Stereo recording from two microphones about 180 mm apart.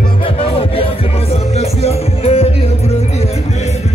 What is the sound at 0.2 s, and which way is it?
Music, 30° left (ahead or behind).